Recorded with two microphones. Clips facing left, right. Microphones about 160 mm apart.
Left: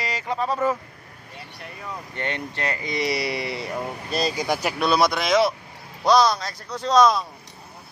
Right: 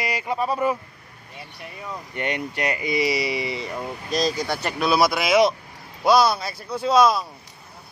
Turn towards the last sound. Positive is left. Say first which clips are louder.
# even
turn(degrees=-5)  # may be behind; listen again after turning